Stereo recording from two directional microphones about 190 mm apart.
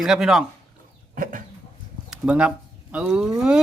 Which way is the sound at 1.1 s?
45° right (ahead or behind).